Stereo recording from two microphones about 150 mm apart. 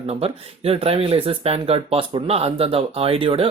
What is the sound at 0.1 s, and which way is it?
Speech, 40° right (ahead or behind).